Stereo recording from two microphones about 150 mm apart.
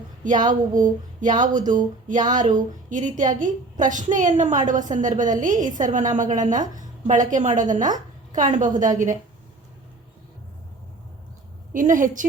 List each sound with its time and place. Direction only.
0.4 s a woman's voice: 60° right (ahead or behind)
11.7 s a woman's voice: 60° right (ahead or behind)